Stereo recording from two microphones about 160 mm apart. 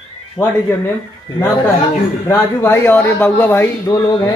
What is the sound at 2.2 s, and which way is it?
Speech, 15° left (ahead or behind).